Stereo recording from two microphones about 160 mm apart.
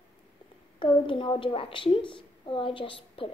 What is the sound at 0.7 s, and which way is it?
A woman's voice, 30° left (ahead or behind).